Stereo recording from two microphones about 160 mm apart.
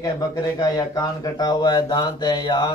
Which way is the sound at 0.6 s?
20° left (ahead or behind).